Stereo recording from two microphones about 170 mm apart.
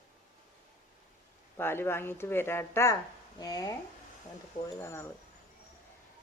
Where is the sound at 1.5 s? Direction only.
15° left (ahead or behind).